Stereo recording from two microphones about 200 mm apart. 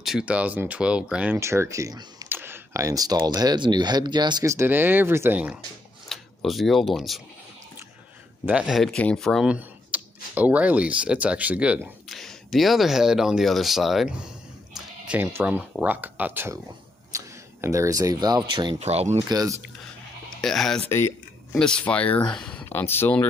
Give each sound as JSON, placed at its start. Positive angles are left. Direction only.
{"t": 0.0, "sound": "speech", "side_deg": -5}
{"t": 8.5, "sound": "speech", "side_deg": -5}
{"t": 19.2, "sound": "speech", "side_deg": -15}
{"t": 20.3, "sound": "speech", "side_deg": 0}
{"t": 20.9, "sound": "speech", "side_deg": 10}